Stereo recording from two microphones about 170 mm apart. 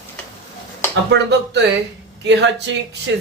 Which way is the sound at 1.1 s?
90° right.